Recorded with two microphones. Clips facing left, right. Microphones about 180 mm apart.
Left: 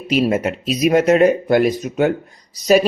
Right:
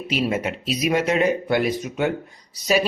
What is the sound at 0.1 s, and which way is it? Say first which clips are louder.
Speech: left 7 dB; 45° left (ahead or behind).